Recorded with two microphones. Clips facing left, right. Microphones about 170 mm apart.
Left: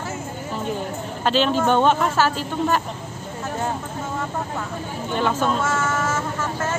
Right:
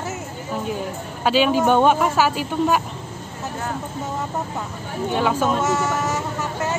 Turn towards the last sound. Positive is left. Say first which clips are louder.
# even
turn(degrees=-15)  # may be behind; listen again after turning